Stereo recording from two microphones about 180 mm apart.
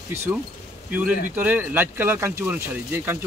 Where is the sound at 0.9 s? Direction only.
10° right (ahead or behind).